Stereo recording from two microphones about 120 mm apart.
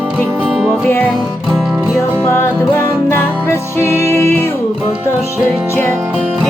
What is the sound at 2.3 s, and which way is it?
Music, 20° left (ahead or behind).